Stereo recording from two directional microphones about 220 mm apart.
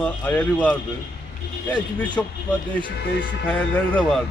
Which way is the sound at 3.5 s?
5° left (ahead or behind).